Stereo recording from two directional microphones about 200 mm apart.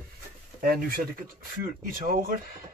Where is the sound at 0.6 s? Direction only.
45° right (ahead or behind).